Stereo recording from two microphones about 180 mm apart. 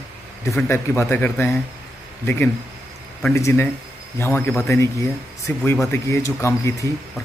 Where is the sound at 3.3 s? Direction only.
15° left (ahead or behind).